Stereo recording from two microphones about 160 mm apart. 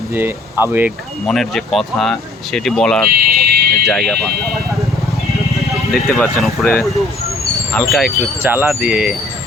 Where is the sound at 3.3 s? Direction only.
70° right (ahead or behind).